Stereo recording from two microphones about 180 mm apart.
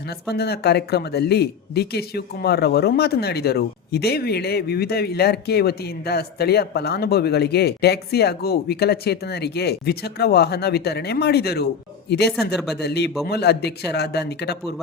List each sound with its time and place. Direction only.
0.1 s a man's voice: 65° left (ahead or behind)